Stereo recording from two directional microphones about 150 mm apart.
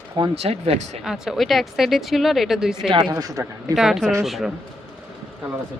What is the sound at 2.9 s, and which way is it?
Speech, 30° right (ahead or behind).